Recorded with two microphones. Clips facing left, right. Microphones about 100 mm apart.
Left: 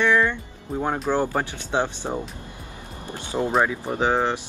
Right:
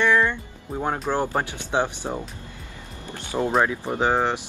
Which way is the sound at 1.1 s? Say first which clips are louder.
Left 1 dB; 15° right (ahead or behind).